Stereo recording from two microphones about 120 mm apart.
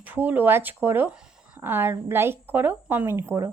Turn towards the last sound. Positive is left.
turn(degrees=-25)  # may be behind; listen again after turning